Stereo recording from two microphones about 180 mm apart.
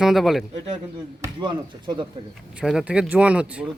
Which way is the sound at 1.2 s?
25° right (ahead or behind).